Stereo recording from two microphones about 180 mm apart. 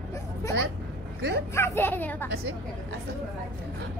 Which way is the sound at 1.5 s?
15° left (ahead or behind).